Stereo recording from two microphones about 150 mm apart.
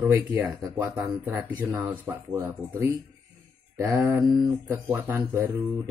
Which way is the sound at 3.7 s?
20° right (ahead or behind).